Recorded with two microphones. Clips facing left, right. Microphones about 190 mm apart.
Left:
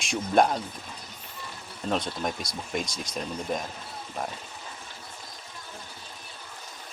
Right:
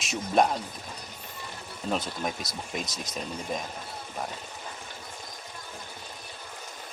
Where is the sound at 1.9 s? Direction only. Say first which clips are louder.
Left 2 dB; 5° right (ahead or behind).